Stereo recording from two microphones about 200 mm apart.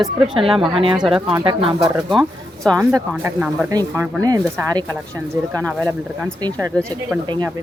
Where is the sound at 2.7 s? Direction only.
20° right (ahead or behind).